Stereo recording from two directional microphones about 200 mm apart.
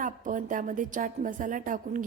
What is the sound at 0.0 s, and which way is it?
A woman's voice, 40° right (ahead or behind).